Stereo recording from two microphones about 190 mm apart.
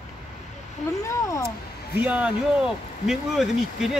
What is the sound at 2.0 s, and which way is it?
Speech, 10° right (ahead or behind).